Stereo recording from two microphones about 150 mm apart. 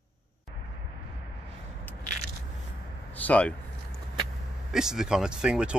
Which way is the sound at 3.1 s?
10° left (ahead or behind).